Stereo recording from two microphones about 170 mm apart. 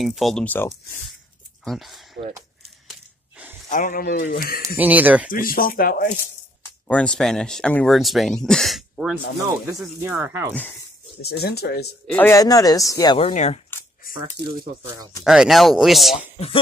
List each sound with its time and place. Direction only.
0.0 s speech: centre (ahead or behind)
2.9 s gasp: 5° right (ahead or behind)
3.6 s speech: 50° left (ahead or behind)
4.7 s speech: 10° right (ahead or behind)
5.3 s speech: 55° left (ahead or behind)
6.9 s speech: 5° left (ahead or behind)
9.9 s speech: 15° right (ahead or behind)
11.1 s speech: 70° left (ahead or behind)
12.1 s speech: 10° left (ahead or behind)
12.4 s speech: 20° left (ahead or behind)
13.2 s speech: 40° left (ahead or behind)
15.2 s speech: centre (ahead or behind)